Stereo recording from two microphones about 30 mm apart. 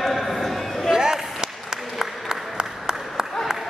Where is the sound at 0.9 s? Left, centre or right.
Right.